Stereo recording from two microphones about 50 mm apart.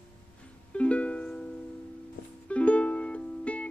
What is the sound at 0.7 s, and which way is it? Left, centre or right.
Music, left.